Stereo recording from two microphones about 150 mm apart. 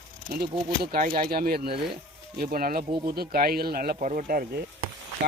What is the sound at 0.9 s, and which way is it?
Speech, 65° right (ahead or behind).